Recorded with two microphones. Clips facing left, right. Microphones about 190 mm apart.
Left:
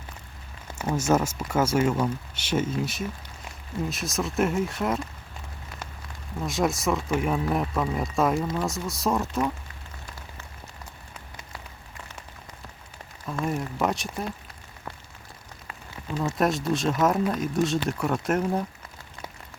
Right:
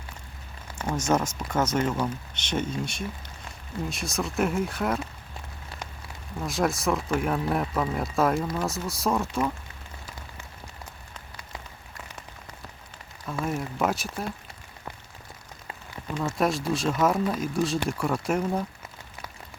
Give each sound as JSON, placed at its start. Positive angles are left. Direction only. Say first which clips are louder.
{"t": 0.7, "sound": "a sound", "louder": "left 1 dB", "side_deg": 25}
{"t": 1.0, "sound": "speech", "louder": "left 2 dB", "side_deg": 5}
{"t": 6.4, "sound": "speech", "louder": "left 1 dB", "side_deg": 0}
{"t": 13.2, "sound": "speech", "louder": "left 1 dB", "side_deg": 0}
{"t": 16.1, "sound": "speech", "louder": "left 1 dB", "side_deg": 0}